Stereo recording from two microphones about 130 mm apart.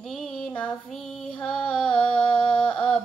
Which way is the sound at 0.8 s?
Centre (ahead or behind).